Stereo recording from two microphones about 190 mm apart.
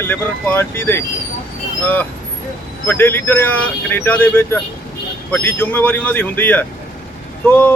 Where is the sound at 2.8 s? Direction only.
10° left (ahead or behind).